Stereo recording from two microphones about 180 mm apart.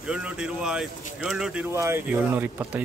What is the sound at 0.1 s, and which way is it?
Speech, 5° right (ahead or behind).